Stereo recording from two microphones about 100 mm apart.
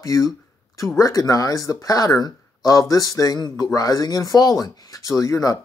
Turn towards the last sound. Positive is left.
turn(degrees=35)  # may be behind; listen again after turning